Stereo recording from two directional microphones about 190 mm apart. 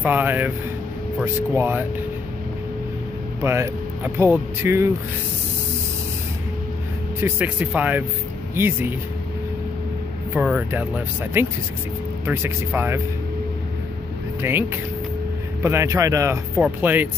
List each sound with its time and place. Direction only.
0.0 s speech: 10° right (ahead or behind)
3.3 s speech: 15° right (ahead or behind)
7.2 s speech: 10° right (ahead or behind)
10.3 s speech: 5° right (ahead or behind)
14.4 s speech: 10° right (ahead or behind)